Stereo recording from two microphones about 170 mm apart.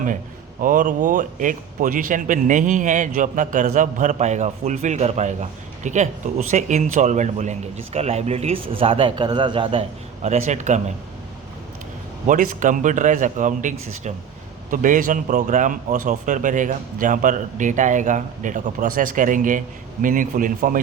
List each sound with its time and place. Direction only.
0.6 s a man's voice: 50° right (ahead or behind); by 9.8 s 30° right (ahead or behind)
10.2 s a man's voice: 40° right (ahead or behind)
12.3 s a man's voice: 50° right (ahead or behind)